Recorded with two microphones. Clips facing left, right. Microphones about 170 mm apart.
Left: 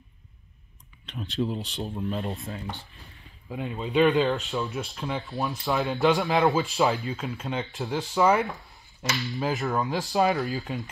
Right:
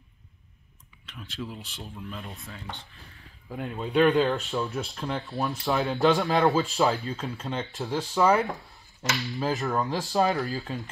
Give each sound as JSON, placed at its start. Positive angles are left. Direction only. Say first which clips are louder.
{"t": 1.0, "sound": "speech", "louder": "left 8 dB", "side_deg": 30}
{"t": 2.6, "sound": "speech", "louder": "left 3 dB", "side_deg": 10}
{"t": 7.0, "sound": "speech", "louder": "left 1 dB", "side_deg": 15}